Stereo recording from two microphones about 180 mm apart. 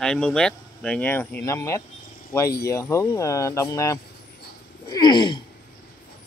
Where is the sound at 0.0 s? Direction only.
5° left (ahead or behind).